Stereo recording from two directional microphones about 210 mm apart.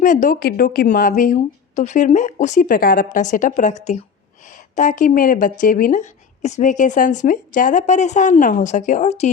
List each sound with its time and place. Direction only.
0.0 s speech: 35° left (ahead or behind)